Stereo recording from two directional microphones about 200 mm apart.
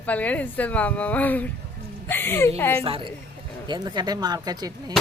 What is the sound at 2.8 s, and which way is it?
Speech, 25° right (ahead or behind).